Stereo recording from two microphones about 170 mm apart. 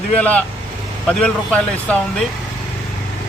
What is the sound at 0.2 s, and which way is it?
Speech, 10° left (ahead or behind).